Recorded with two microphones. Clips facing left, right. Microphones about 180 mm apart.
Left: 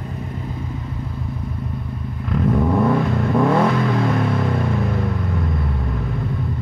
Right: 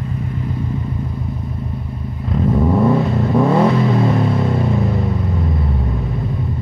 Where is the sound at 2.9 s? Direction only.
25° right (ahead or behind).